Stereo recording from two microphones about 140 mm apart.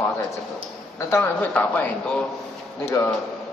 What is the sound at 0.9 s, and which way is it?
Speech, 15° left (ahead or behind).